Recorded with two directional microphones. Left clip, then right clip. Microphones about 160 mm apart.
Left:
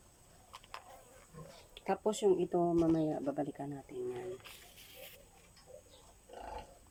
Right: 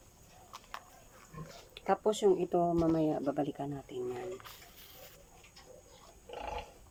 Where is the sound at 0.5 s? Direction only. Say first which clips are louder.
Right 3 dB; 10° left (ahead or behind).